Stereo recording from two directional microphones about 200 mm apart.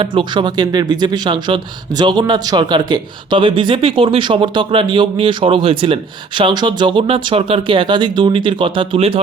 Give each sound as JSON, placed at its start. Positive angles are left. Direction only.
{"t": 0.0, "sound": "speech", "side_deg": -25}